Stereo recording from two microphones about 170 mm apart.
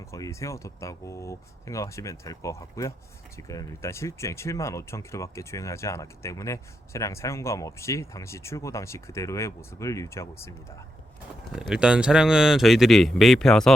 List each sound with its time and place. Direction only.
0.0 s speech: 15° left (ahead or behind)
11.5 s speech: 5° right (ahead or behind)